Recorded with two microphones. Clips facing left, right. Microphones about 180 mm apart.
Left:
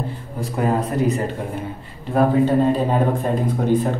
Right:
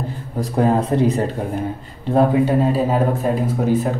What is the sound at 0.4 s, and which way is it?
Speech, 30° right (ahead or behind).